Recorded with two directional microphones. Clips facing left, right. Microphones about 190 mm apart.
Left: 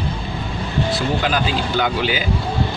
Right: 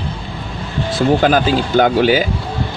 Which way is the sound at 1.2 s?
45° right (ahead or behind).